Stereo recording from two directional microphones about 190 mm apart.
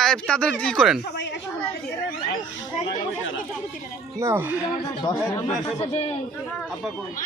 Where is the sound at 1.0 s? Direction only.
65° left (ahead or behind).